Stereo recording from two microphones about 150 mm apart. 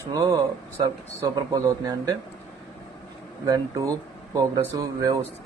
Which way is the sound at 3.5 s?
20° right (ahead or behind).